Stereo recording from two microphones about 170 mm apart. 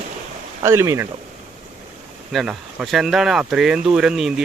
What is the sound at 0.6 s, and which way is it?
Speech, 15° right (ahead or behind).